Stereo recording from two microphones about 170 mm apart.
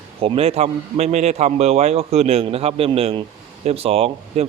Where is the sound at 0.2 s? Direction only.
35° right (ahead or behind).